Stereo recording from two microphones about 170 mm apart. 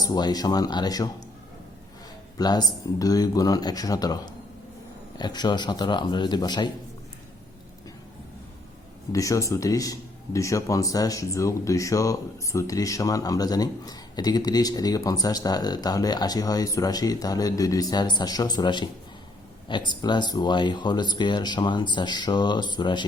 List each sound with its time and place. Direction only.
0.0 s speech: 25° left (ahead or behind)
2.4 s speech: 25° left (ahead or behind)
9.1 s speech: 20° left (ahead or behind)